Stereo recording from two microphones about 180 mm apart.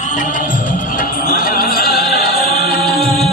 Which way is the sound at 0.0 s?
45° left (ahead or behind).